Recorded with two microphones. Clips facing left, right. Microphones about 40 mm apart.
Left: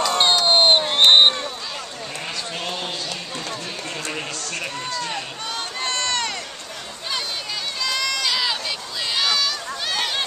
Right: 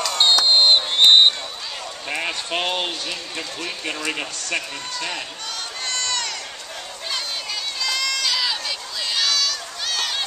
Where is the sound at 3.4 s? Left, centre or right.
Right.